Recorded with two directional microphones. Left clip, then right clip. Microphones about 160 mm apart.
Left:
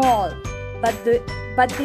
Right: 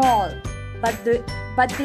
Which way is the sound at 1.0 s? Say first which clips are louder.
Left 2 dB; 20° left (ahead or behind).